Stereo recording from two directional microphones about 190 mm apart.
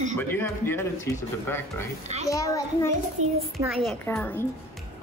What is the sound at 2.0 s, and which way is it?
Speech, 35° right (ahead or behind).